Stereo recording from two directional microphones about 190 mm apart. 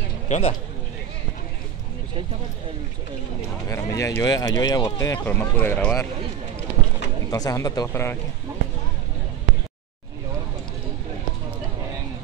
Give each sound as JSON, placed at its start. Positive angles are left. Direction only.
{"t": 0.3, "sound": "speech", "side_deg": 35}
{"t": 3.6, "sound": "speech", "side_deg": 15}
{"t": 7.2, "sound": "speech", "side_deg": 20}